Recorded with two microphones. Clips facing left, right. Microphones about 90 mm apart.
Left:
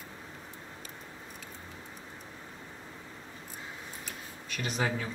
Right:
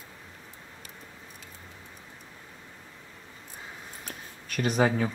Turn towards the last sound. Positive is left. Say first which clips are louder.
# right 8 dB
turn(degrees=-45)  # may be behind; listen again after turning